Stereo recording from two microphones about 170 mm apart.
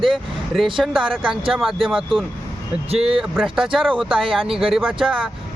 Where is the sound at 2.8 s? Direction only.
35° right (ahead or behind).